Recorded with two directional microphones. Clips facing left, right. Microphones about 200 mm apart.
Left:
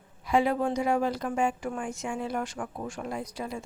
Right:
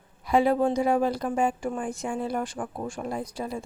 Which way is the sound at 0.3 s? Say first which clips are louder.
Right 3 dB; 35° right (ahead or behind).